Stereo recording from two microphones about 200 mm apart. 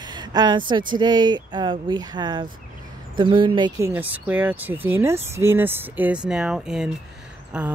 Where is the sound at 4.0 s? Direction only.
10° right (ahead or behind).